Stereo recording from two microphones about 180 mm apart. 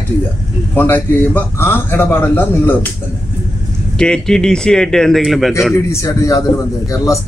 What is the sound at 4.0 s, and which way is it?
Speech, 5° left (ahead or behind).